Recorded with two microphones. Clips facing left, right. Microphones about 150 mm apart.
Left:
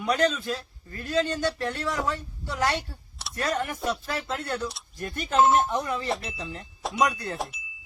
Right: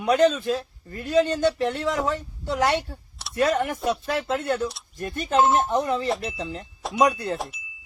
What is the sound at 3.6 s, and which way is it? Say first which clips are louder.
Speech: right 4 dB; 20° right (ahead or behind).